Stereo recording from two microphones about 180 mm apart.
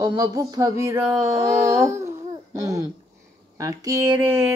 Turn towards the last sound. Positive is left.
turn(degrees=-15)  # may be behind; listen again after turning